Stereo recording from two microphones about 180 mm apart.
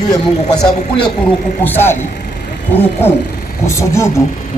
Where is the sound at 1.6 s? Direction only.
10° left (ahead or behind).